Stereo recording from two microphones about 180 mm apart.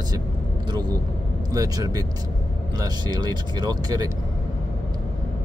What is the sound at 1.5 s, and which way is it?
Speech, 20° right (ahead or behind).